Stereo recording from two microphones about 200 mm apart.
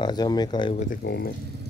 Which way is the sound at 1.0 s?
50° left (ahead or behind).